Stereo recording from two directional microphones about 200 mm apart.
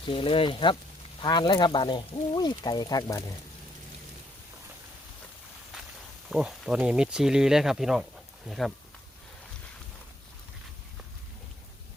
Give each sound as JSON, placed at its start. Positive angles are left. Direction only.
{"t": 0.1, "sound": "speech", "side_deg": 25}
{"t": 6.3, "sound": "speech", "side_deg": -5}